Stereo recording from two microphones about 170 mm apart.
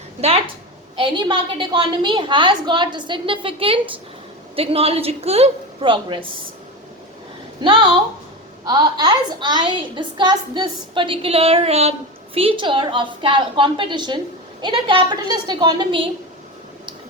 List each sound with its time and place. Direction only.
0.9 s a woman's voice: 30° right (ahead or behind)
7.6 s a woman's voice: 25° right (ahead or behind)